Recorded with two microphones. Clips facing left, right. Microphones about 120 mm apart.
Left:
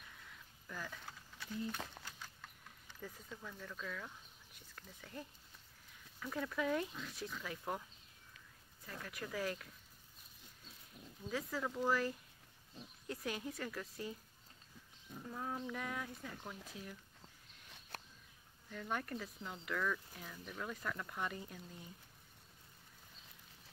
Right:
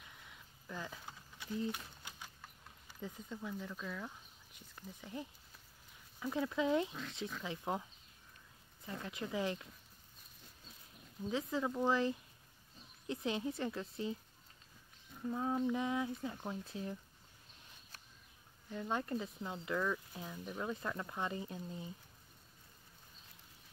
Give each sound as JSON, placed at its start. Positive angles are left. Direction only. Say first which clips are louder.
{"t": 0.0, "sound": "a sound", "louder": "even", "side_deg": -20}
{"t": 1.4, "sound": "speech", "louder": "right 4 dB", "side_deg": -20}
{"t": 2.0, "sound": "a sound", "louder": "right 1 dB", "side_deg": -15}
{"t": 6.1, "sound": "speech", "louder": "right 4 dB", "side_deg": -15}
{"t": 8.8, "sound": "speech", "louder": "right 4 dB", "side_deg": -20}
{"t": 11.2, "sound": "speech", "louder": "right 4 dB", "side_deg": -20}
{"t": 15.6, "sound": "speech", "louder": "right 8 dB", "side_deg": -20}
{"t": 18.7, "sound": "speech", "louder": "right 4 dB", "side_deg": -20}